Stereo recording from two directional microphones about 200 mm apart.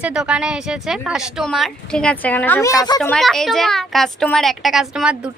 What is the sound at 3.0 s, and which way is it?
A woman's voice, centre (ahead or behind).